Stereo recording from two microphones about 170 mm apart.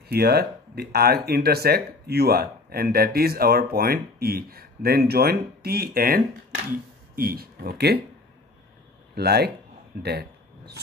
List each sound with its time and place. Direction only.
0.1 s speech: 70° right (ahead or behind)
9.1 s speech: 70° right (ahead or behind)
10.0 s a sound: 75° right (ahead or behind)